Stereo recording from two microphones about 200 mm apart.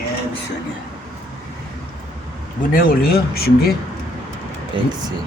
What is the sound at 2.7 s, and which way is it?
Speech, 45° left (ahead or behind).